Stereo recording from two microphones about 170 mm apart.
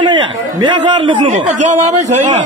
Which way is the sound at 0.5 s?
30° right (ahead or behind).